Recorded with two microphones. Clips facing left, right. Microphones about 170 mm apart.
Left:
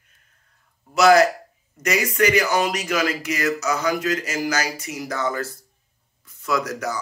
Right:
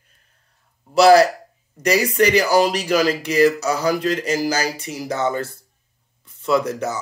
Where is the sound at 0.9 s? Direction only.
30° right (ahead or behind).